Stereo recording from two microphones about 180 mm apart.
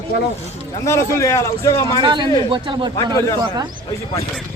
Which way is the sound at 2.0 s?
25° right (ahead or behind).